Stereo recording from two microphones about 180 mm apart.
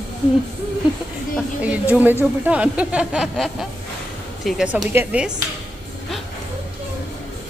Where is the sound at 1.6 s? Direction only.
10° right (ahead or behind).